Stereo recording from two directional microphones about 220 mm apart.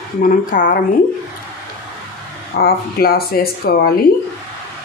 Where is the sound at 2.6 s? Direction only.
45° left (ahead or behind).